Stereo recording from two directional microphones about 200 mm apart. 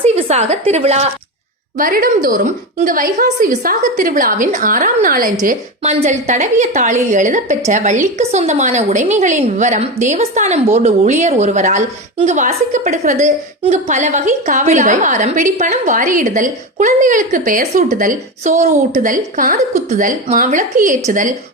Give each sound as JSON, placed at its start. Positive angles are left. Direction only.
{"t": 0.0, "sound": "a woman's voice", "side_deg": -30}
{"t": 1.8, "sound": "a woman's voice", "side_deg": -45}